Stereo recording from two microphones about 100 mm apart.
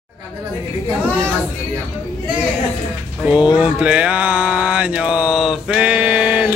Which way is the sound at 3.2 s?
10° right (ahead or behind).